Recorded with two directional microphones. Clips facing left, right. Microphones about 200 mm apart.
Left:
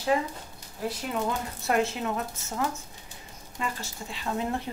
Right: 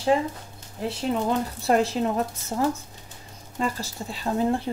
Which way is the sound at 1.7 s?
35° right (ahead or behind).